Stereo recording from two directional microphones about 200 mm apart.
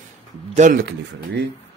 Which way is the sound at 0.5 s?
40° right (ahead or behind).